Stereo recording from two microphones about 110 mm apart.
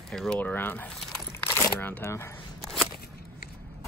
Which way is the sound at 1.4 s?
20° left (ahead or behind).